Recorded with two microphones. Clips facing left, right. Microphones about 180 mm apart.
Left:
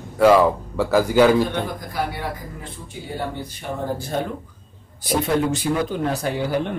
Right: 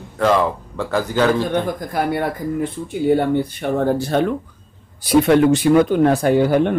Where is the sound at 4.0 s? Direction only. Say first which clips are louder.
Right 7 dB; 75° right (ahead or behind).